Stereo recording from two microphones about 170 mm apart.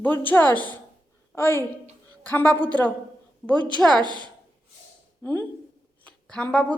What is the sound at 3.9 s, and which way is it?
Speech, 25° right (ahead or behind).